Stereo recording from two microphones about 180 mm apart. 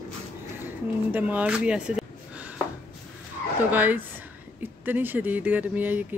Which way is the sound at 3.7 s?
10° right (ahead or behind).